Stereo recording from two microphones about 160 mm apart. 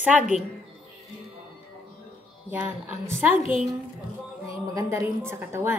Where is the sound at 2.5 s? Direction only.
15° right (ahead or behind).